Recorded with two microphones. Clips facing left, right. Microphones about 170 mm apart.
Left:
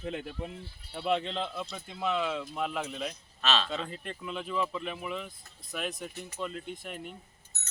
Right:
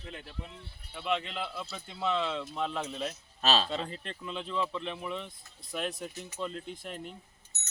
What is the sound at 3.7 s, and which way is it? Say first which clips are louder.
Speech: even; centre (ahead or behind).